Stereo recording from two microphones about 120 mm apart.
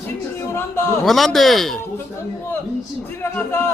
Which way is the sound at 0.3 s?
20° left (ahead or behind).